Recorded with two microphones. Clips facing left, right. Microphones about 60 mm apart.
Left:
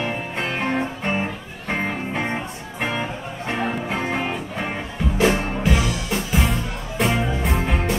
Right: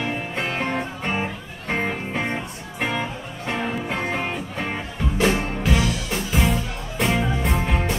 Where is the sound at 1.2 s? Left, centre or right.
Centre.